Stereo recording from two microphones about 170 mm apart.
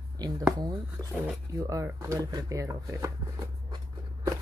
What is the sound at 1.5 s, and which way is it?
Speech, 20° right (ahead or behind).